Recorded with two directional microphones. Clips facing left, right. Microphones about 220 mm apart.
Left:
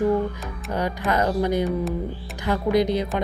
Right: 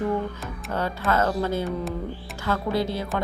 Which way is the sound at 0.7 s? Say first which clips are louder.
Left 1 dB; 15° left (ahead or behind).